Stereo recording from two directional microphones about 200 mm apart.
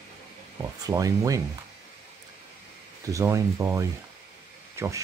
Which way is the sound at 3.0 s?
15° right (ahead or behind).